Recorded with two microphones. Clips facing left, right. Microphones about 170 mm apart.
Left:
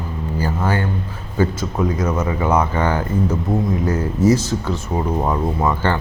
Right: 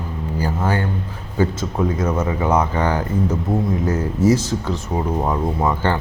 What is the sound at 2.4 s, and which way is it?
Speech, 20° right (ahead or behind).